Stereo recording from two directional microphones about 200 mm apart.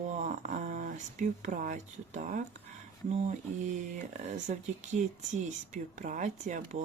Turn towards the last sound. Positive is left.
turn(degrees=-35)  # may be behind; listen again after turning